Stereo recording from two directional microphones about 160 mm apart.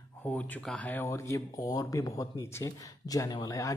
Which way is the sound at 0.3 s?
5° left (ahead or behind).